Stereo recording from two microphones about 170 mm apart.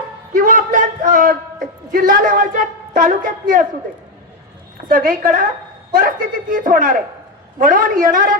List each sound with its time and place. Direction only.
0.3 s a man's voice: 50° right (ahead or behind)
4.9 s a man's voice: 50° right (ahead or behind)